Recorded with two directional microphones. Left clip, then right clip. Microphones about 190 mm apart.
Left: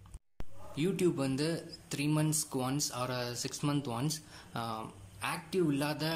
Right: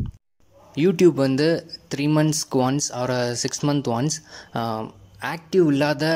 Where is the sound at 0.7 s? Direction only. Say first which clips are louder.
Right 15 dB; 40° right (ahead or behind).